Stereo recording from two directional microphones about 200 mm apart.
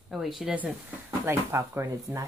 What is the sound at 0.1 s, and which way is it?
Speech, centre (ahead or behind).